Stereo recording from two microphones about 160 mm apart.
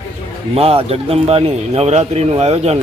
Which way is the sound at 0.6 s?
40° right (ahead or behind).